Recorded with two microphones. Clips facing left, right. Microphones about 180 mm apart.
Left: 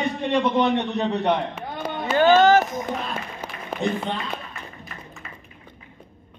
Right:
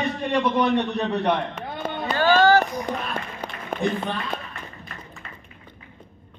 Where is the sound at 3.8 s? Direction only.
25° left (ahead or behind).